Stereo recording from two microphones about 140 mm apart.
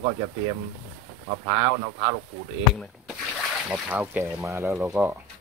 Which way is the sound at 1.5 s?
45° right (ahead or behind).